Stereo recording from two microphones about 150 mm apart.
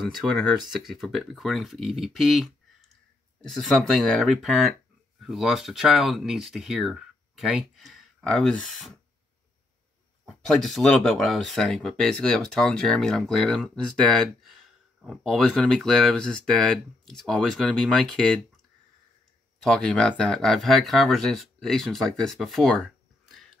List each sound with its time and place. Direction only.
0.2 s speech: centre (ahead or behind)
10.2 s speech: centre (ahead or behind)
19.6 s speech: 5° left (ahead or behind)